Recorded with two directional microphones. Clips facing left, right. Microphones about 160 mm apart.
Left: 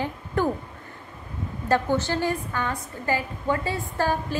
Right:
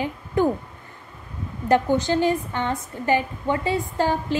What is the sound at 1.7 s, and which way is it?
A woman's voice, 15° right (ahead or behind).